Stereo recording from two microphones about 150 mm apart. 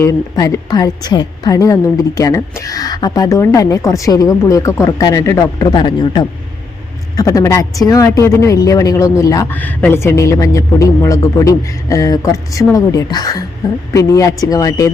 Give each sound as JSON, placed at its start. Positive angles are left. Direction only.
{"t": 0.0, "sound": "a woman's voice", "side_deg": 20}
{"t": 9.6, "sound": "a woman's voice", "side_deg": 10}